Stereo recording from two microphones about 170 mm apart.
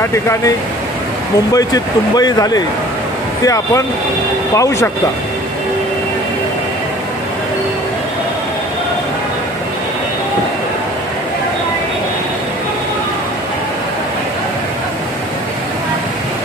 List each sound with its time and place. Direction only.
0.0 s speech: 15° left (ahead or behind)
1.5 s speech: 20° left (ahead or behind)